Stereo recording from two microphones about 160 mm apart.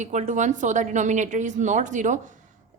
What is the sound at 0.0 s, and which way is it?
A woman's voice, 50° right (ahead or behind).